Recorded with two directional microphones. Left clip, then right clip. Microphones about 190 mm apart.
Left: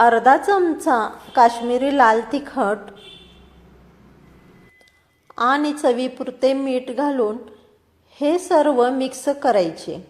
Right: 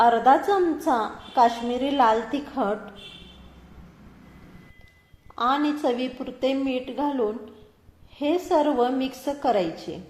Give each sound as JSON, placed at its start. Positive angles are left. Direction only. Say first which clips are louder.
{"t": 0.0, "sound": "a woman's voice", "louder": "left 4 dB", "side_deg": 30}
{"t": 5.3, "sound": "a woman's voice", "louder": "left 5 dB", "side_deg": 35}